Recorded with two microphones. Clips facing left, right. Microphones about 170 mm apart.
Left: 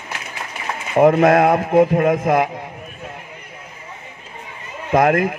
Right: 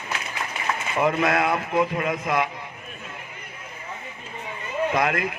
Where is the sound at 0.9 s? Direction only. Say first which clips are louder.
Left 10 dB; 50° left (ahead or behind).